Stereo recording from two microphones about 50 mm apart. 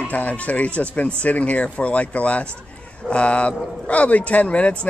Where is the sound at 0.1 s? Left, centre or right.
Left.